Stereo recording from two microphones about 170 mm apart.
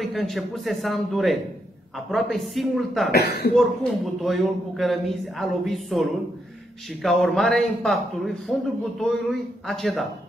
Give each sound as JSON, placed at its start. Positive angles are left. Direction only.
{"t": 0.0, "sound": "speech", "side_deg": 0}
{"t": 3.1, "sound": "speech", "side_deg": 70}
{"t": 3.5, "sound": "speech", "side_deg": 0}